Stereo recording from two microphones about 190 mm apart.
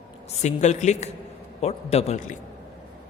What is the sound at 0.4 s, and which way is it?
A man's voice, 35° left (ahead or behind).